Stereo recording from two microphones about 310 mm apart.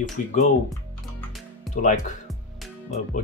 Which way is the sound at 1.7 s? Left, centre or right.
Left.